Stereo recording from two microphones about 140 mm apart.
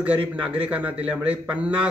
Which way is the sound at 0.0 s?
10° right (ahead or behind).